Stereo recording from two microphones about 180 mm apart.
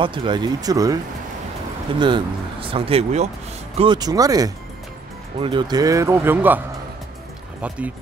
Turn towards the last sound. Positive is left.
turn(degrees=-5)  # may be behind; listen again after turning